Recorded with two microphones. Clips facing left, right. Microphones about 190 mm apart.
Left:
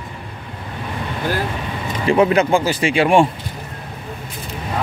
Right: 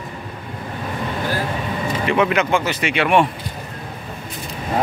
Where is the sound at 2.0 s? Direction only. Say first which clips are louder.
Left 5 dB; 35° left (ahead or behind).